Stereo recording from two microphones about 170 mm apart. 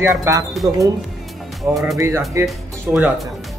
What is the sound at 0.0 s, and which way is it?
Speech, 15° right (ahead or behind).